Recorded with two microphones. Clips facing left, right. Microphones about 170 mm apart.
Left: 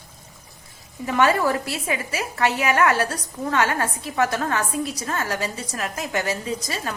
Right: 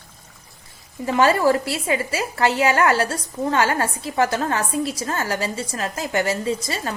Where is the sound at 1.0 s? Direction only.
30° right (ahead or behind).